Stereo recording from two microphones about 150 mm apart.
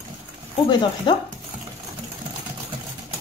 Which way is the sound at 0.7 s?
30° left (ahead or behind).